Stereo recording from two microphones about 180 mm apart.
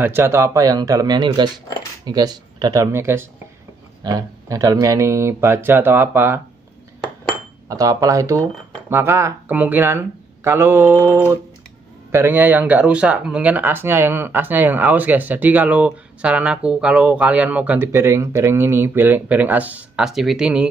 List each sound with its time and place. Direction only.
0.0 s speech: 15° right (ahead or behind)
7.6 s speech: 20° right (ahead or behind); by 20.6 s 5° right (ahead or behind)